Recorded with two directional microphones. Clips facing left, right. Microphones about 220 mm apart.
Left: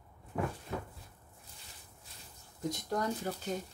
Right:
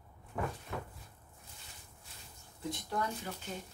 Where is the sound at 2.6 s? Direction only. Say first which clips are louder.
Left 3 dB; 40° left (ahead or behind).